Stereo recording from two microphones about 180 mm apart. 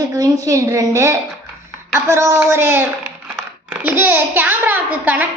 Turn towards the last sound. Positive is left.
turn(degrees=-10)  # may be behind; listen again after turning